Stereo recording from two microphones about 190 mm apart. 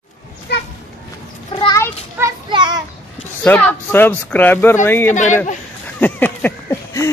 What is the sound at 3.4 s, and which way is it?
Speech, 10° left (ahead or behind).